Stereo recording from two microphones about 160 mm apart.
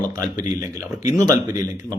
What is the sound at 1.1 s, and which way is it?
Speech, 20° right (ahead or behind).